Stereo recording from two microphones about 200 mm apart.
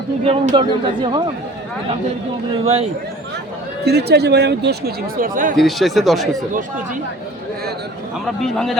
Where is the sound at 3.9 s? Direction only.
55° right (ahead or behind).